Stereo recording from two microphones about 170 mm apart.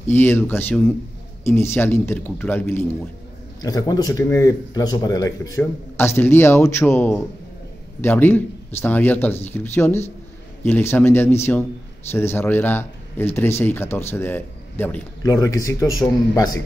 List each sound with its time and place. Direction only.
0.1 s a man's voice: 10° left (ahead or behind)